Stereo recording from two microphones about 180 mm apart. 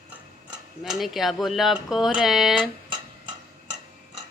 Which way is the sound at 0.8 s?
Centre (ahead or behind).